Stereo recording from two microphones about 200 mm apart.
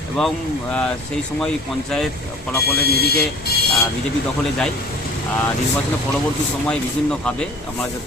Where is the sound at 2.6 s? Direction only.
50° left (ahead or behind).